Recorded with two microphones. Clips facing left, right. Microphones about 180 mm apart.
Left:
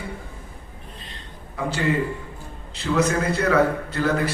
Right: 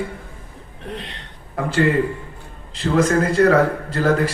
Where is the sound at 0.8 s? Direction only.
75° right (ahead or behind); by 1.9 s 55° right (ahead or behind).